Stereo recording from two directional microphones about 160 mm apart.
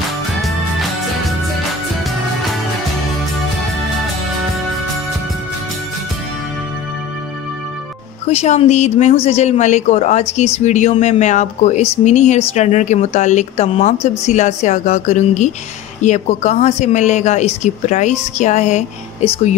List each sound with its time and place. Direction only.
0.4 s music: centre (ahead or behind)
8.3 s speech: 40° left (ahead or behind)